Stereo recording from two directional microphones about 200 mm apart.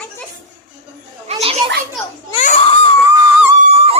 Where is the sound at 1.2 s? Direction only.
30° right (ahead or behind).